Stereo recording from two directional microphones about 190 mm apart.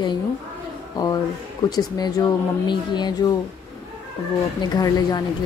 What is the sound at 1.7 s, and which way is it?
Speech, 20° left (ahead or behind).